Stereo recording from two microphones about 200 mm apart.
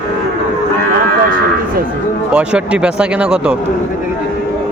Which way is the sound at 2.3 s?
5° right (ahead or behind).